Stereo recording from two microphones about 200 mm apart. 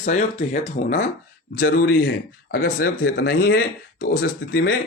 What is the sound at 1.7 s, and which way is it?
A man's voice, 55° left (ahead or behind).